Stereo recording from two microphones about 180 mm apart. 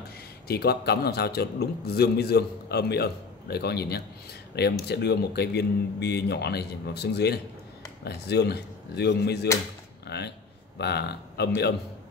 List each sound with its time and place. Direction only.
0.5 s a man's voice: 60° left (ahead or behind)
10.0 s a sound: 70° left (ahead or behind)
10.8 s a man's voice: 65° left (ahead or behind)